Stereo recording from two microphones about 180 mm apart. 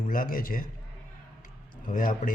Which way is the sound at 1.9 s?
50° left (ahead or behind).